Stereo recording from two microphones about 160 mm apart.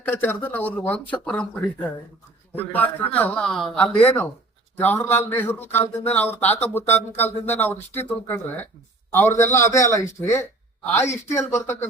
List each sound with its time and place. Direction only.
0.0 s a man's voice: 10° left (ahead or behind)